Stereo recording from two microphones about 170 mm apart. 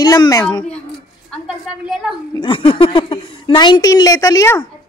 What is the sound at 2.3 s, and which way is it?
A woman's voice, 30° left (ahead or behind).